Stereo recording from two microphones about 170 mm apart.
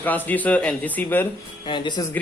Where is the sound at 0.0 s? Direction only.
10° left (ahead or behind).